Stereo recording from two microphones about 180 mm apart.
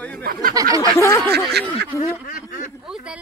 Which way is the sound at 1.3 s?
65° right (ahead or behind).